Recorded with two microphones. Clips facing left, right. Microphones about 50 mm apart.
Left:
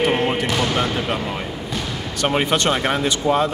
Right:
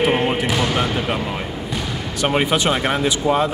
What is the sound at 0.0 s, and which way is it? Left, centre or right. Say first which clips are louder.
Basketball bounce: right 1 dB; centre.